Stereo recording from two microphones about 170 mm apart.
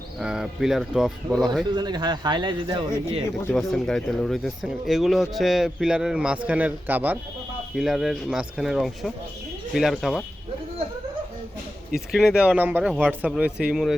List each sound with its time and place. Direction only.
0.2 s speech: 5° right (ahead or behind)
1.7 s speech: 25° right (ahead or behind)
3.5 s speech: centre (ahead or behind)
11.9 s speech: centre (ahead or behind)